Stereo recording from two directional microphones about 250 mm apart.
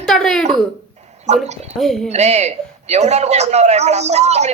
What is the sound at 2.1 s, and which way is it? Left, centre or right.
A man's voice, right.